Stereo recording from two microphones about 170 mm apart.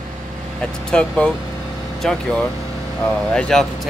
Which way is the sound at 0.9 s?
5° left (ahead or behind).